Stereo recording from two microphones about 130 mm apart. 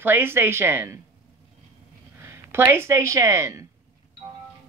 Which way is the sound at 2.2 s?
20° right (ahead or behind).